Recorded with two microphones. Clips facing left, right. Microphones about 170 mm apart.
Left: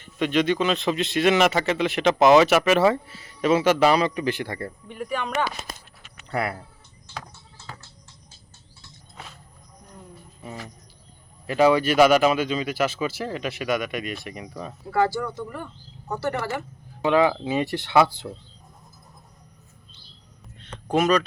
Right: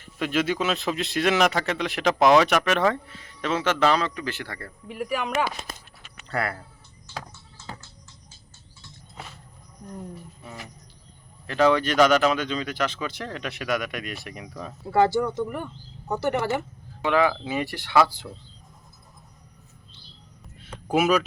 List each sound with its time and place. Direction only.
0.0 s speech: centre (ahead or behind); by 4.7 s 20° left (ahead or behind)
4.9 s speech: 5° right (ahead or behind)
6.2 s speech: 20° left (ahead or behind)
11.4 s speech: 10° left (ahead or behind)
14.8 s speech: 25° right (ahead or behind)
17.0 s speech: 20° left (ahead or behind)
20.6 s a sound: 5° right (ahead or behind)